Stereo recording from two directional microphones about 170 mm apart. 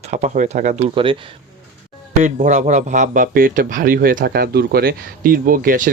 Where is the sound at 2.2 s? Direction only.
45° right (ahead or behind).